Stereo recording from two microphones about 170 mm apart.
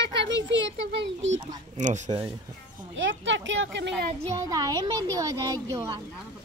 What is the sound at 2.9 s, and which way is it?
Speech, 90° right.